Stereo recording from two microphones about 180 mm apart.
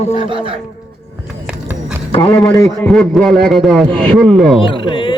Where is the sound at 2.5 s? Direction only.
10° left (ahead or behind).